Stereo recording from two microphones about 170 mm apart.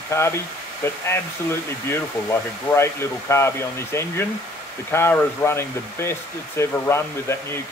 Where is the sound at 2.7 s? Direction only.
15° left (ahead or behind).